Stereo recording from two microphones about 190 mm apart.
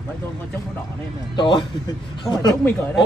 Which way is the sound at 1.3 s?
25° left (ahead or behind).